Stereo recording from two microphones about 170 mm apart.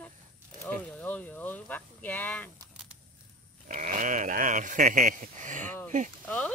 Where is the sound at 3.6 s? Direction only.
45° right (ahead or behind).